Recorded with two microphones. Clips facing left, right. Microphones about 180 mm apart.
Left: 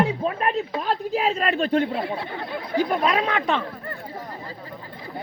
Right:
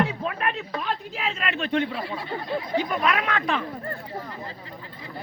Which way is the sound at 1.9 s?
60° left (ahead or behind).